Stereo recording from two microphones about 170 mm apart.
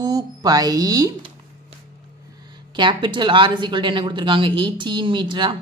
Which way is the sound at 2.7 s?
25° right (ahead or behind).